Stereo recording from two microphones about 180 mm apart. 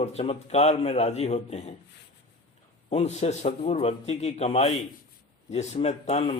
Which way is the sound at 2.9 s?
35° left (ahead or behind).